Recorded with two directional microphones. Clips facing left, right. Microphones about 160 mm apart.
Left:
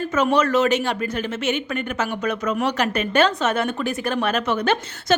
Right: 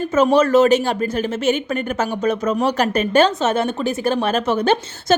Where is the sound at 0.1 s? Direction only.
35° right (ahead or behind).